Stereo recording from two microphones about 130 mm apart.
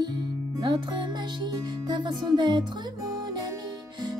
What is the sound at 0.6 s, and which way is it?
Music, 35° right (ahead or behind).